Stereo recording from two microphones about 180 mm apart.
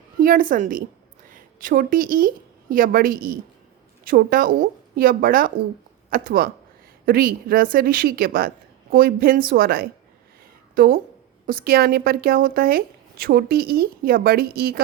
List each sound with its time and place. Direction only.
0.2 s a woman's voice: 50° right (ahead or behind)